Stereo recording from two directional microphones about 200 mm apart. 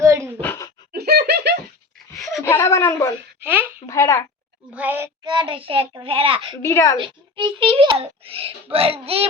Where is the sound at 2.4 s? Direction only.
15° left (ahead or behind).